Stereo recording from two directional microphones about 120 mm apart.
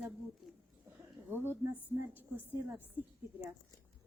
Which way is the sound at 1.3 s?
20° right (ahead or behind).